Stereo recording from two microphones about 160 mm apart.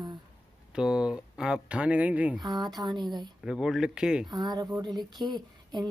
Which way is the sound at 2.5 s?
25° right (ahead or behind).